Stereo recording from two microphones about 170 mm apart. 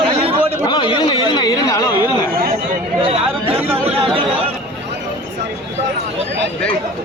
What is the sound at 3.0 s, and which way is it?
Chatter, 35° right (ahead or behind).